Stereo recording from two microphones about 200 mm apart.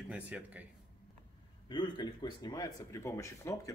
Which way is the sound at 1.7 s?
20° left (ahead or behind).